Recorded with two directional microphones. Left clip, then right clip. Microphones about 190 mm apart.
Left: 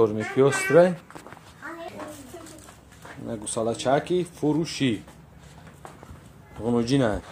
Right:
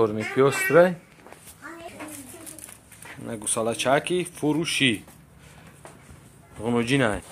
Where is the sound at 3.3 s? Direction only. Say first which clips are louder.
Even; centre (ahead or behind).